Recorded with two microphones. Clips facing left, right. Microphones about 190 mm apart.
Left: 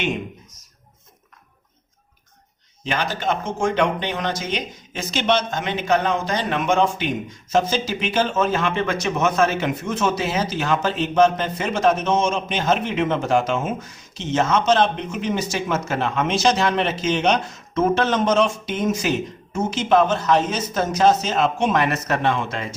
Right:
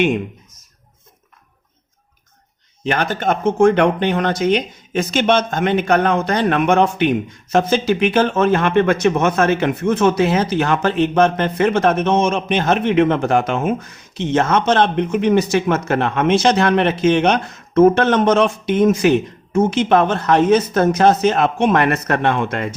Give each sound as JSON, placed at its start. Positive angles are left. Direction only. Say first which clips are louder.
{"t": 2.8, "sound": "speech", "louder": "right 5 dB", "side_deg": -55}